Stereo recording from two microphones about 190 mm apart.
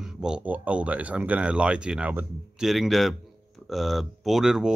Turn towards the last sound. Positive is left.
turn(degrees=-5)  # may be behind; listen again after turning